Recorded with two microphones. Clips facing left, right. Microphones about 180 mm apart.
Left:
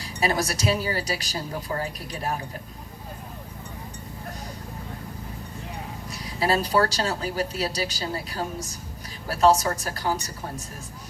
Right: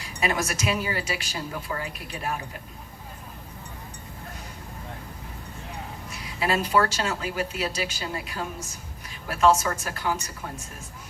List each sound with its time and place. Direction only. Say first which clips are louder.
0.0 s speech: left 2 dB; 35° left (ahead or behind)
6.1 s speech: left 3 dB; 35° left (ahead or behind)